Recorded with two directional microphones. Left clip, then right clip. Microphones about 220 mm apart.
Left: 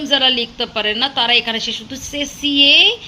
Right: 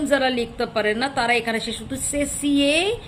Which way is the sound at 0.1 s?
15° right (ahead or behind).